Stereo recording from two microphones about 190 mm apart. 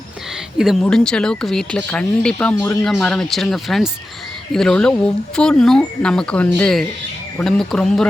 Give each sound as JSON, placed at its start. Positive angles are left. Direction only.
{"t": 0.6, "sound": "speech", "side_deg": 0}